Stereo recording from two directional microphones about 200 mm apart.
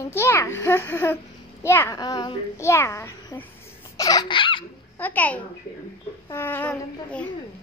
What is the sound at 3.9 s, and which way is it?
Baby laughter, 20° left (ahead or behind).